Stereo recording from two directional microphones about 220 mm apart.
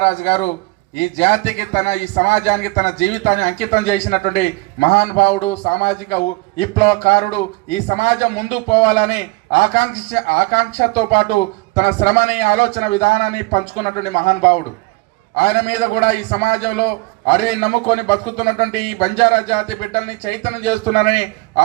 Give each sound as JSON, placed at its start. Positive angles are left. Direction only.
{"t": 0.0, "sound": "a man's voice", "side_deg": 30}
{"t": 15.4, "sound": "a man's voice", "side_deg": 30}